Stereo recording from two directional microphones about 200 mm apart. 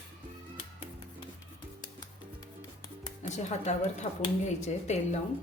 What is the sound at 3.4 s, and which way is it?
Speech, 35° left (ahead or behind).